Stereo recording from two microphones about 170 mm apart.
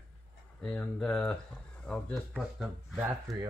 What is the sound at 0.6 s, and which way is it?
Speech, 5° left (ahead or behind).